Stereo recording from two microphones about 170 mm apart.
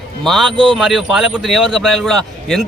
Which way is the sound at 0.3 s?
Centre (ahead or behind).